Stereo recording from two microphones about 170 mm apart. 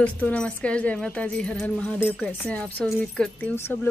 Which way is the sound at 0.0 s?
10° left (ahead or behind).